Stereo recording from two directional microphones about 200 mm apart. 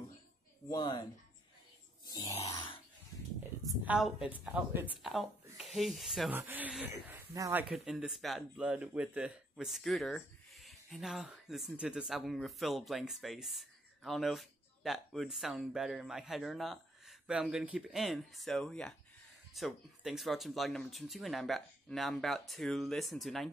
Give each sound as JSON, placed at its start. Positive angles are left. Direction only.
{"t": 0.7, "sound": "speech", "side_deg": 20}
{"t": 2.0, "sound": "a sound", "side_deg": 20}
{"t": 3.6, "sound": "a woman's voice", "side_deg": -10}
{"t": 7.7, "sound": "speech", "side_deg": 0}